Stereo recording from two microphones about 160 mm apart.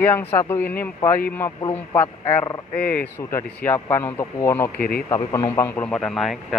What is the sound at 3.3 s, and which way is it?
Speech, 15° left (ahead or behind).